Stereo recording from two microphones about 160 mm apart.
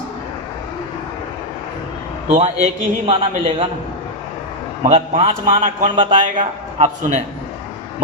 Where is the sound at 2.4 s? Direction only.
40° right (ahead or behind).